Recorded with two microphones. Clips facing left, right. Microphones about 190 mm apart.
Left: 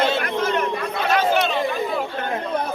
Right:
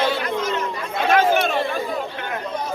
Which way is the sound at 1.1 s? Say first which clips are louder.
Right 2 dB; 50° right (ahead or behind).